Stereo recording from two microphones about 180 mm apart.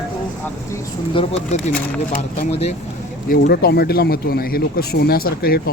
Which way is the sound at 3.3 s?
55° left (ahead or behind).